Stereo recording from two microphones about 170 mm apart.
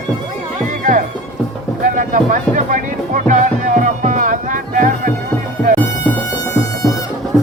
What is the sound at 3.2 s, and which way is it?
Music, 45° right (ahead or behind).